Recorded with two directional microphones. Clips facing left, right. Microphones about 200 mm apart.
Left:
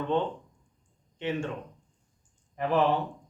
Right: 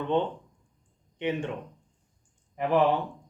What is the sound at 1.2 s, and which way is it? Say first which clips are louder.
Speech: right 2 dB; 20° right (ahead or behind).